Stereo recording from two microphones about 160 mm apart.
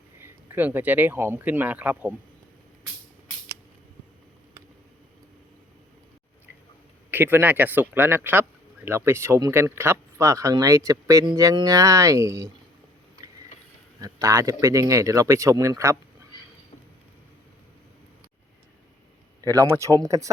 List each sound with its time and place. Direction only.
0.2 s speech: 10° right (ahead or behind)
7.1 s speech: 10° right (ahead or behind)
14.0 s speech: 20° right (ahead or behind)
19.5 s speech: 20° right (ahead or behind)